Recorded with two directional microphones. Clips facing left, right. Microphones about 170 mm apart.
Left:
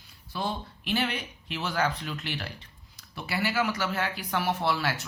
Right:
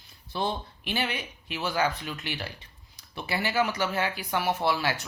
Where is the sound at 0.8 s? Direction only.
10° right (ahead or behind).